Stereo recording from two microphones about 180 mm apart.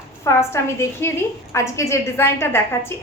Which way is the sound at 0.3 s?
15° left (ahead or behind).